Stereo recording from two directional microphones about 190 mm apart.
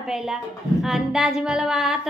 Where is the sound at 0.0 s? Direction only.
Centre (ahead or behind).